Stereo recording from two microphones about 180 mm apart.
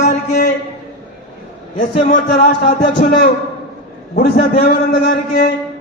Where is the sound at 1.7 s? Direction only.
50° left (ahead or behind).